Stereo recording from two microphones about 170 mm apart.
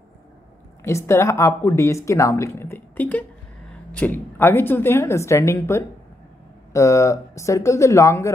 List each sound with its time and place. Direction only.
0.8 s speech: 15° left (ahead or behind)